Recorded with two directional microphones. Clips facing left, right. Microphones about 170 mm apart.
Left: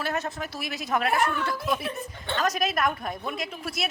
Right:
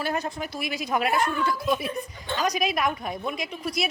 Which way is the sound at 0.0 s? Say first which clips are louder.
Right 1 dB; centre (ahead or behind).